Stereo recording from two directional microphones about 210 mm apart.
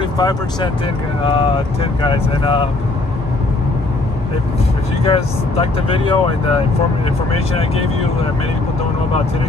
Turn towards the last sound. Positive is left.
turn(degrees=30)  # may be behind; listen again after turning